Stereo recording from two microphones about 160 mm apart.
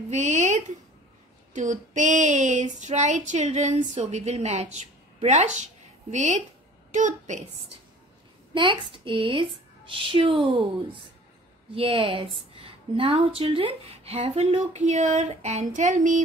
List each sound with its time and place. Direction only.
0.1 s speech: 45° right (ahead or behind)
1.5 s a sound: 50° right (ahead or behind)
6.9 s a woman's voice: 50° right (ahead or behind)
8.8 s a woman's voice: 30° right (ahead or behind); by 16.2 s 50° right (ahead or behind)